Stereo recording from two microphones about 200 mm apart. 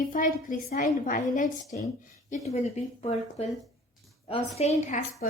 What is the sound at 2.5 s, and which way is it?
Speech, 30° left (ahead or behind).